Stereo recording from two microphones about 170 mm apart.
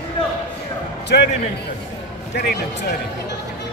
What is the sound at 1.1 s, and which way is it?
Speech, 70° left (ahead or behind).